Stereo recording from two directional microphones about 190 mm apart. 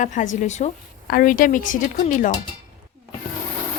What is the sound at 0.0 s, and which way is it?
Speech, 40° left (ahead or behind).